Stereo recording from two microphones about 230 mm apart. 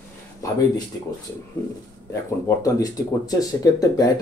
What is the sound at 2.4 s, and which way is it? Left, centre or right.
Speech, centre.